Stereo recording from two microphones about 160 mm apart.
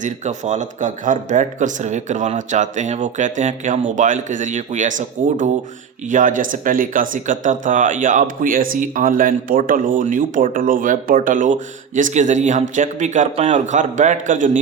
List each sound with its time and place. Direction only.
0.0 s a man's voice: 50° right (ahead or behind)